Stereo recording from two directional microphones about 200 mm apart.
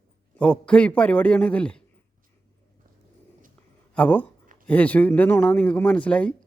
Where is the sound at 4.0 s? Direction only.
10° left (ahead or behind).